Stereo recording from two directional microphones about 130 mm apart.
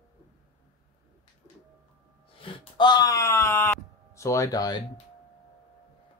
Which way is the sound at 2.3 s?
40° left (ahead or behind).